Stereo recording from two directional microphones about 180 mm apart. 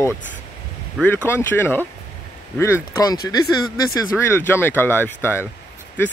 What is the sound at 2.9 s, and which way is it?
Speech, 20° left (ahead or behind).